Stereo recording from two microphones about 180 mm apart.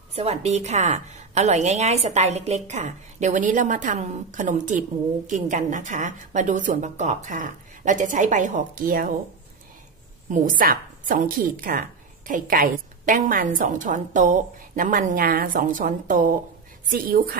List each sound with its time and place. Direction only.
0.1 s a woman's voice: 35° right (ahead or behind); by 9.1 s 50° right (ahead or behind)
10.3 s a woman's voice: 50° right (ahead or behind)